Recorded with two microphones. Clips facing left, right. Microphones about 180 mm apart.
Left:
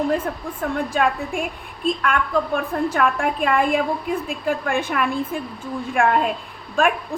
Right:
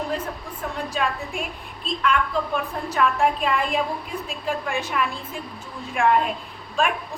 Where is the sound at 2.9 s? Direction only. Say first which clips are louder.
Right 5 dB; 55° left (ahead or behind).